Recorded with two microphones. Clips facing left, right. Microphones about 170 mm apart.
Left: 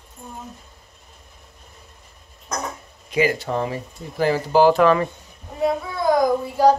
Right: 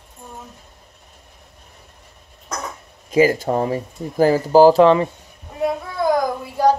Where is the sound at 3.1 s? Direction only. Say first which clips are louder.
Right 5 dB; 40° right (ahead or behind); by 5.1 s 25° right (ahead or behind).